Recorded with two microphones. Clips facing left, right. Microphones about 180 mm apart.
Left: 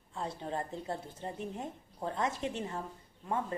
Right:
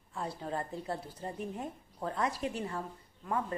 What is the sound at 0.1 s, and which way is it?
A woman's voice, 25° left (ahead or behind).